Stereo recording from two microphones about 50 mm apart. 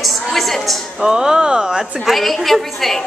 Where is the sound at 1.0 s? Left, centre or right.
Centre.